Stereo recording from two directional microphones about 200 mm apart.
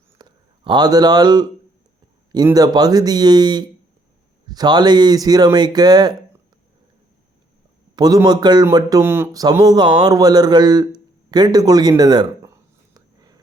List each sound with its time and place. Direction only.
0.2 s a man's voice: 20° right (ahead or behind)
7.9 s a man's voice: 20° right (ahead or behind)
11.3 s a sound: 20° right (ahead or behind)